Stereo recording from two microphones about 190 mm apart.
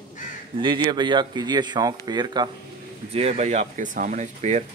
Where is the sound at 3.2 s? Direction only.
35° right (ahead or behind).